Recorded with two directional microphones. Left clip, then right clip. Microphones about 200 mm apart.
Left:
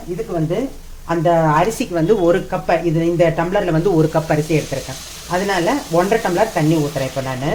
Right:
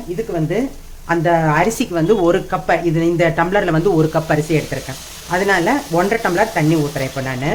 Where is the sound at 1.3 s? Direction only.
15° right (ahead or behind).